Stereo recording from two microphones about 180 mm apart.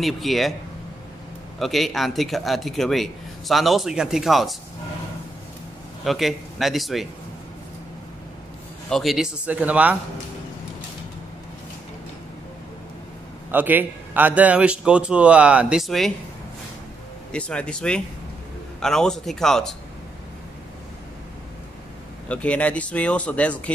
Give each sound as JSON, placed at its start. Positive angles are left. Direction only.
{"t": 0.0, "sound": "a man's voice", "side_deg": 0}
{"t": 1.6, "sound": "a man's voice", "side_deg": 0}
{"t": 6.0, "sound": "a man's voice", "side_deg": 0}
{"t": 8.8, "sound": "a man's voice", "side_deg": 0}
{"t": 13.5, "sound": "a man's voice", "side_deg": -10}
{"t": 17.3, "sound": "a man's voice", "side_deg": 5}
{"t": 22.3, "sound": "speech", "side_deg": 5}